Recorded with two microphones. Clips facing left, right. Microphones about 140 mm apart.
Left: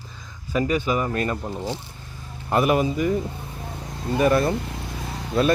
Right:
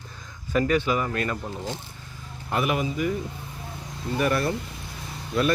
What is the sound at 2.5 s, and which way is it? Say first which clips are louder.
Speech: left 5 dB; 40° left (ahead or behind).